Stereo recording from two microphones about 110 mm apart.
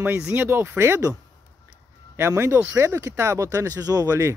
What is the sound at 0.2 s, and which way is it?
Speech, 15° right (ahead or behind).